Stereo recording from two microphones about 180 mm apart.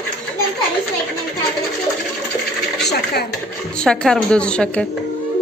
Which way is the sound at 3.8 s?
5° left (ahead or behind).